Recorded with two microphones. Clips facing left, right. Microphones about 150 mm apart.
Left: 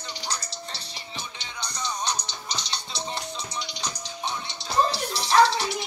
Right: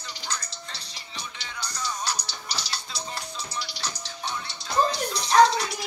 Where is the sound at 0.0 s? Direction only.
35° left (ahead or behind).